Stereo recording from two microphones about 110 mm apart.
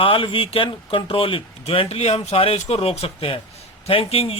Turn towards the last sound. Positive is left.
turn(degrees=60)  # may be behind; listen again after turning